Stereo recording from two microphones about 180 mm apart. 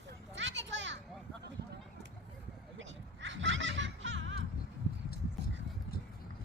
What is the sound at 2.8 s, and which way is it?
Music, 90° right.